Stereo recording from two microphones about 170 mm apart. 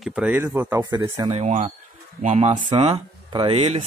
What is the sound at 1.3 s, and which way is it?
A man's voice, 40° right (ahead or behind).